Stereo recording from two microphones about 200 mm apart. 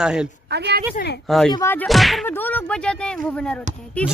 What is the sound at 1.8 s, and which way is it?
Speech, centre (ahead or behind).